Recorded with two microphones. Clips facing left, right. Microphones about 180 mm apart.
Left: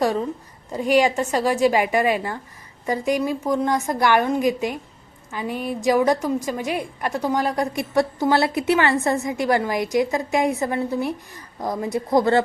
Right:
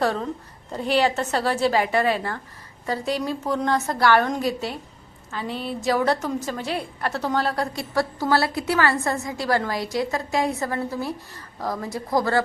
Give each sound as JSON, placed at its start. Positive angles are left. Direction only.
{"t": 0.0, "sound": "a woman's voice", "side_deg": 10}